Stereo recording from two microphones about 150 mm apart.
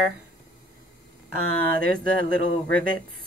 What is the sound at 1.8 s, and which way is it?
Speech, 75° right (ahead or behind).